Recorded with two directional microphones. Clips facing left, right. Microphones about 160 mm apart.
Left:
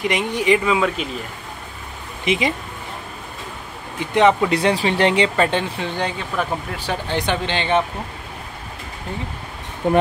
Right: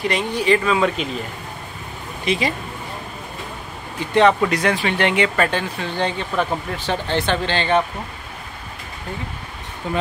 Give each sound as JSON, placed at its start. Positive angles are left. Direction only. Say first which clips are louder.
{"t": 0.0, "sound": "speech", "louder": "even", "side_deg": 15}
{"t": 0.7, "sound": "speech", "louder": "right 1 dB", "side_deg": 5}
{"t": 2.2, "sound": "speech", "louder": "left 1 dB", "side_deg": 20}
{"t": 4.0, "sound": "speech", "louder": "even", "side_deg": 20}
{"t": 5.3, "sound": "speech", "louder": "left 1 dB", "side_deg": 20}
{"t": 9.8, "sound": "speech", "louder": "left 7 dB", "side_deg": 55}